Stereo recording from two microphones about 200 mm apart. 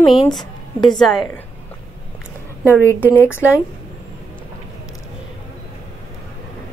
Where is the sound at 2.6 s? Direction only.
10° right (ahead or behind).